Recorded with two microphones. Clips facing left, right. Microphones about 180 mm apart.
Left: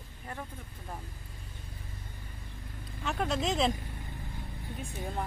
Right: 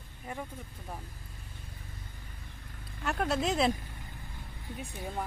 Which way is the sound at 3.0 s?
Centre (ahead or behind).